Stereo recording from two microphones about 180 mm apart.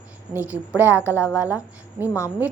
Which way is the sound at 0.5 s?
15° left (ahead or behind).